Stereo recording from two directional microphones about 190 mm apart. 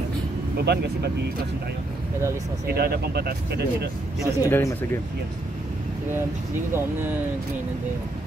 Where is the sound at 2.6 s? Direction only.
55° right (ahead or behind).